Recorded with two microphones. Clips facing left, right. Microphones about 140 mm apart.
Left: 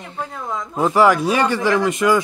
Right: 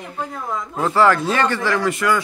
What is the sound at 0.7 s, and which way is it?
A man's voice, 15° left (ahead or behind).